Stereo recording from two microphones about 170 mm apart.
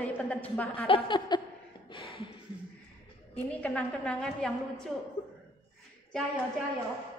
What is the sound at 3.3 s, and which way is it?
A woman's voice, 10° left (ahead or behind).